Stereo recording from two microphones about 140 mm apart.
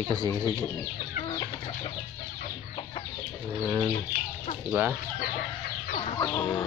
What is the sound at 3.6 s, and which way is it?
Speech, 10° right (ahead or behind).